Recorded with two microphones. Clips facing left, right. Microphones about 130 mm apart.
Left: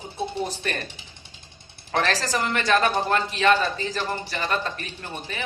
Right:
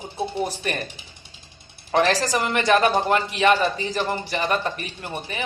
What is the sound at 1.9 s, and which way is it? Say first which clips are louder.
Speech: right 4 dB; 15° right (ahead or behind).